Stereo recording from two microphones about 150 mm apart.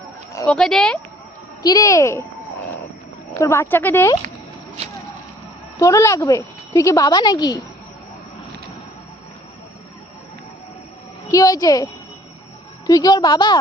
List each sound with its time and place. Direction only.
0.4 s speech: 5° left (ahead or behind)
1.6 s a woman's voice: 25° left (ahead or behind)
3.4 s speech: 15° left (ahead or behind)
5.8 s a woman's voice: 20° left (ahead or behind)
11.3 s a woman's voice: 25° left (ahead or behind)
12.9 s a woman's voice: 25° left (ahead or behind)